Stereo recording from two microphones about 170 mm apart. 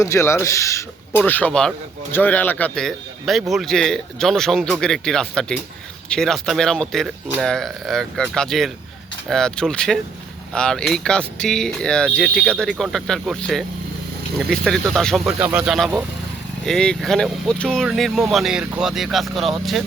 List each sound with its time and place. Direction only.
0.0 s speech: 15° left (ahead or behind); by 19.8 s centre (ahead or behind)